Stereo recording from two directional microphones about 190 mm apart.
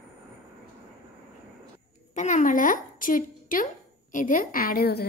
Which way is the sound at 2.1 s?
40° left (ahead or behind).